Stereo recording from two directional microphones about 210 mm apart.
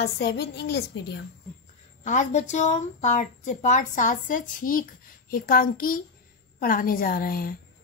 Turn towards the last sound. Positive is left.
turn(degrees=45)  # may be behind; listen again after turning